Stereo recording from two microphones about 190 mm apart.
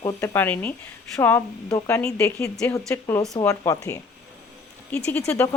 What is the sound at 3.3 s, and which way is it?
Speech, 20° left (ahead or behind).